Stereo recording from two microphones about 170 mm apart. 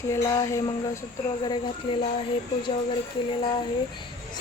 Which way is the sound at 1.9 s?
30° left (ahead or behind).